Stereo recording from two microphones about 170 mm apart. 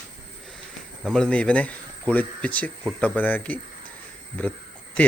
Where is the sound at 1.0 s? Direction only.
5° left (ahead or behind).